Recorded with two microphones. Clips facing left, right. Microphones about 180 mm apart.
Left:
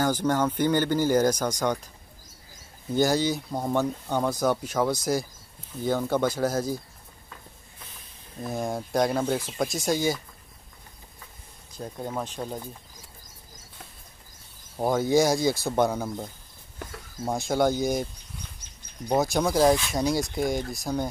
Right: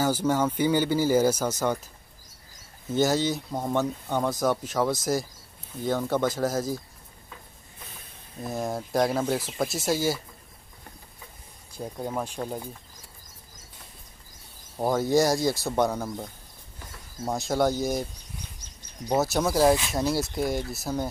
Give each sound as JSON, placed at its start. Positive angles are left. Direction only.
{"t": 0.0, "sound": "speech", "side_deg": -10}
{"t": 2.9, "sound": "speech", "side_deg": 0}
{"t": 8.4, "sound": "speech", "side_deg": 0}
{"t": 11.7, "sound": "speech", "side_deg": -10}
{"t": 14.8, "sound": "speech", "side_deg": 0}
{"t": 19.1, "sound": "speech", "side_deg": -5}